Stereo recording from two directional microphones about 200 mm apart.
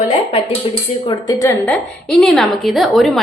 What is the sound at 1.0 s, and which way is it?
A woman's voice, 20° left (ahead or behind).